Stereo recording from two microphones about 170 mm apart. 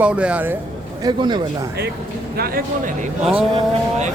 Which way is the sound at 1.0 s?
25° right (ahead or behind).